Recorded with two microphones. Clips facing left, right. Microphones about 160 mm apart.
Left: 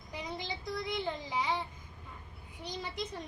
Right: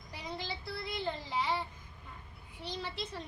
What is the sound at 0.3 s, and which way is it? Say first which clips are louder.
Child singing: even; 15° left (ahead or behind).